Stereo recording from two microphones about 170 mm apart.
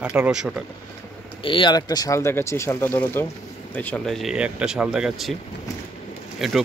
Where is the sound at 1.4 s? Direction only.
30° left (ahead or behind); by 5.4 s centre (ahead or behind).